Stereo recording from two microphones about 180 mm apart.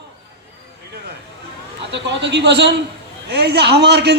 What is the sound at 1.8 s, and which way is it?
A man's voice, 75° right (ahead or behind).